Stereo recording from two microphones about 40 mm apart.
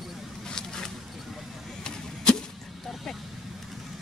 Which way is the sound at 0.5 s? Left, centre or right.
Centre.